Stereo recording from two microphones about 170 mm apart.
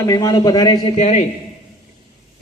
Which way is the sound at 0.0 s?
20° left (ahead or behind).